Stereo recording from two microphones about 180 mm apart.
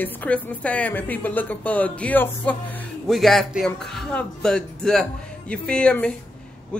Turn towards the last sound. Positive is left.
turn(degrees=5)  # may be behind; listen again after turning